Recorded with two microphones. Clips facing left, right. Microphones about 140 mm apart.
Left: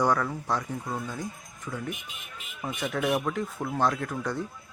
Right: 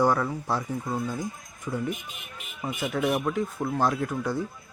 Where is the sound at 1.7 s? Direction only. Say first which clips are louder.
Right 5 dB; 25° right (ahead or behind).